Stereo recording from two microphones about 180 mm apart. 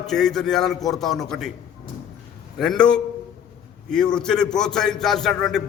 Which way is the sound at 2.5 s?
5° left (ahead or behind).